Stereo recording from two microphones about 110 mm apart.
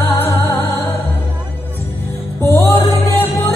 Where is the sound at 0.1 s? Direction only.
20° left (ahead or behind).